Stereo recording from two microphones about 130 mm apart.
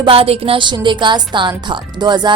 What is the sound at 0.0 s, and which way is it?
A woman's voice, 45° right (ahead or behind).